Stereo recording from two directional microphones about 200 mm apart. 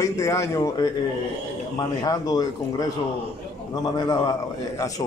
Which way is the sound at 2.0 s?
20° left (ahead or behind).